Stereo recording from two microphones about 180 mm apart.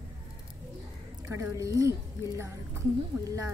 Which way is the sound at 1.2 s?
15° right (ahead or behind).